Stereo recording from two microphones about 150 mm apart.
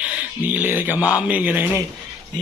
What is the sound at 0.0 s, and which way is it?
Music, 10° right (ahead or behind).